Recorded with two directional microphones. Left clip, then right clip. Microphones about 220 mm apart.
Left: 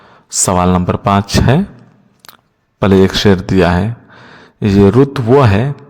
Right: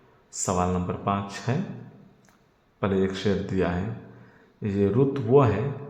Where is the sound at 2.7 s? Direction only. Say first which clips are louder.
Left 15 dB; 45° left (ahead or behind).